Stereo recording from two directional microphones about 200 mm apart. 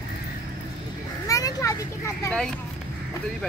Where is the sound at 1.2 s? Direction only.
15° left (ahead or behind).